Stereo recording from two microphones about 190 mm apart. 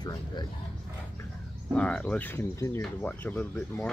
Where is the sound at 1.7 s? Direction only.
5° left (ahead or behind).